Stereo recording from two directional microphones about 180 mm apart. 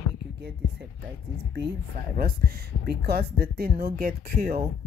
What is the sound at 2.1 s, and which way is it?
Speech, 60° right (ahead or behind).